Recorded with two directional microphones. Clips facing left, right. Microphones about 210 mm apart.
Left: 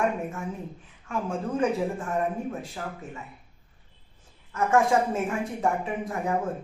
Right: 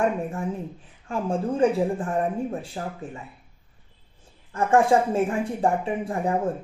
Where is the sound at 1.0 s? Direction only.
30° right (ahead or behind).